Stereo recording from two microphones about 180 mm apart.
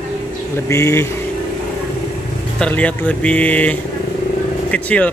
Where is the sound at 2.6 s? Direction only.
5° left (ahead or behind).